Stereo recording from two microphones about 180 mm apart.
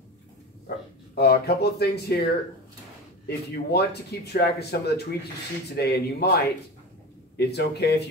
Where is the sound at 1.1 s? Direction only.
60° left (ahead or behind).